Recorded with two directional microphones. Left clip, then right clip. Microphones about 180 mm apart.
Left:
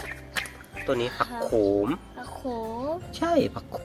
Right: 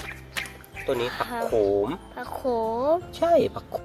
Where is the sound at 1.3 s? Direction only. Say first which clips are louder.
Right 2 dB; 45° right (ahead or behind).